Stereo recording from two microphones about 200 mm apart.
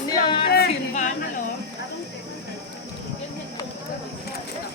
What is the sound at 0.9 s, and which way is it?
Speech, 35° left (ahead or behind).